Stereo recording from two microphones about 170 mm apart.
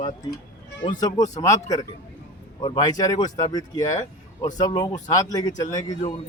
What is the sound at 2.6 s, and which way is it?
A man's voice, 25° left (ahead or behind).